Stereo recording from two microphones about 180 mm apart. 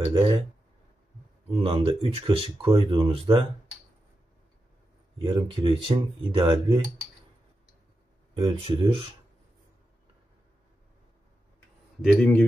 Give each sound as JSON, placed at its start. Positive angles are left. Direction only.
{"t": 0.1, "sound": "speech", "side_deg": -25}
{"t": 1.6, "sound": "speech", "side_deg": -35}
{"t": 5.2, "sound": "speech", "side_deg": -30}
{"t": 8.4, "sound": "speech", "side_deg": -30}
{"t": 12.0, "sound": "a man's voice", "side_deg": 5}